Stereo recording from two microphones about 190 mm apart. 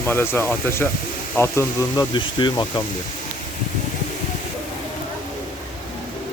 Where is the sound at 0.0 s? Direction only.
10° left (ahead or behind).